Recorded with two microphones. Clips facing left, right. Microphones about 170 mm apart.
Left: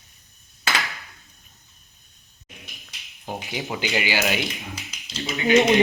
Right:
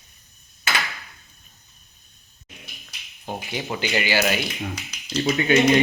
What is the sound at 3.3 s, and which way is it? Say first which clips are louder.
Speech: right 1 dB; centre (ahead or behind).